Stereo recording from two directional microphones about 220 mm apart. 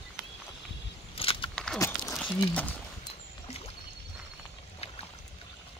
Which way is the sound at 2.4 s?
10° left (ahead or behind).